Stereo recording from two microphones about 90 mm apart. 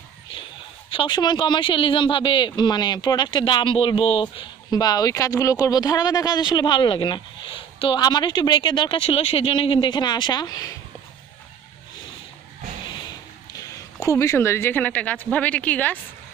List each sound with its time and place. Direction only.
0.3 s a sound: 75° left (ahead or behind)
1.1 s speech: 55° left (ahead or behind); by 4.5 s 80° left
4.6 s speech: 45° left (ahead or behind); by 8.0 s 75° left (ahead or behind)
8.0 s speech: 50° left (ahead or behind)
13.0 s a sound: 45° left (ahead or behind); by 15.2 s 15° left (ahead or behind)
15.3 s speech: 15° left (ahead or behind)